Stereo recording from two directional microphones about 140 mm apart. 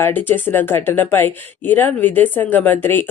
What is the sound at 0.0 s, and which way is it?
Speech, 15° left (ahead or behind).